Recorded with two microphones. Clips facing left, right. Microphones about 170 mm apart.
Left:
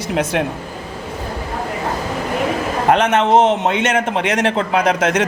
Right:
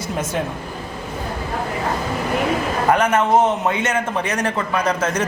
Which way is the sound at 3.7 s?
90° left.